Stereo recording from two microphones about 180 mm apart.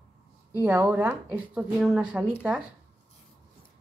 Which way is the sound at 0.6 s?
10° right (ahead or behind).